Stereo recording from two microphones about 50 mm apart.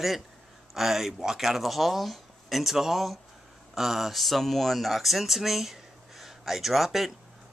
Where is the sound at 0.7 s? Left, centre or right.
Centre.